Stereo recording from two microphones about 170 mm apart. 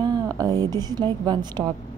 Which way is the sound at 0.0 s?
20° right (ahead or behind).